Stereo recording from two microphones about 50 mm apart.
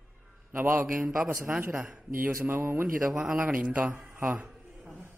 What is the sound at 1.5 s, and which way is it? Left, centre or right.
Speech, right.